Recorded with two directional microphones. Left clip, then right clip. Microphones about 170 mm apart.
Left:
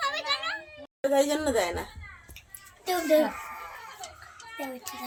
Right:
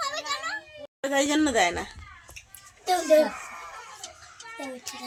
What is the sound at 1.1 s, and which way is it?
Speech, 45° right (ahead or behind).